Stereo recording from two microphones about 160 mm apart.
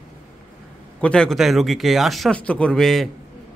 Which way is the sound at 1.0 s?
5° left (ahead or behind).